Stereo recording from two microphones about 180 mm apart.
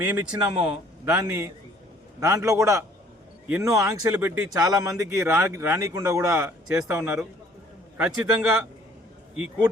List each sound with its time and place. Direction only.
0.0 s a man's voice: 10° right (ahead or behind)